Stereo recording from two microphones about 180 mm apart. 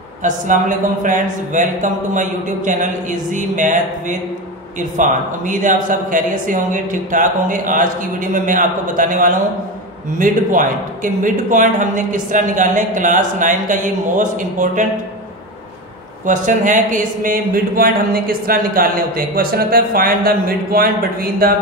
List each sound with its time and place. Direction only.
0.2 s a man's voice: 45° right (ahead or behind)
16.3 s speech: 45° right (ahead or behind)